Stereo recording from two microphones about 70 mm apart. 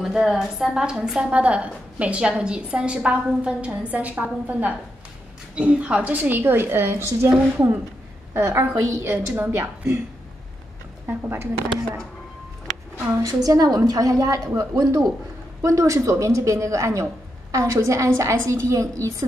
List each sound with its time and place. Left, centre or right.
0.0 s a woman's voice: centre; by 7.2 s right
8.3 s a woman's voice: right
9.1 s a woman's voice: right
11.1 s a woman's voice: right
13.1 s a woman's voice: right
15.6 s a woman's voice: right